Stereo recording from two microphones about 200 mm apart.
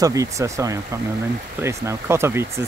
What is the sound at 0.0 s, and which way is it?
Speech, 15° right (ahead or behind).